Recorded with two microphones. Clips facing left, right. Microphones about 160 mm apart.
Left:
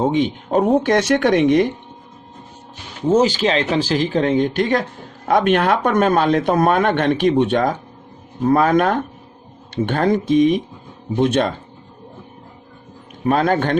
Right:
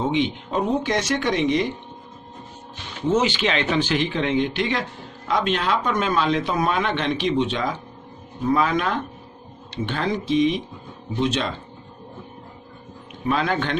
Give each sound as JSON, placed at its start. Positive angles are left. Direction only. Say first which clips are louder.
{"t": 0.0, "sound": "speech", "louder": "left 4 dB", "side_deg": 45}
{"t": 3.1, "sound": "speech", "louder": "left 5 dB", "side_deg": 40}
{"t": 13.2, "sound": "speech", "louder": "left 6 dB", "side_deg": 45}